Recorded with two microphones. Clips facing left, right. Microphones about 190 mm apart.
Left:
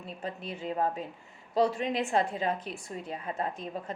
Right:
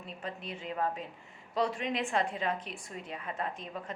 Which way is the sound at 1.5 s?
30° left (ahead or behind).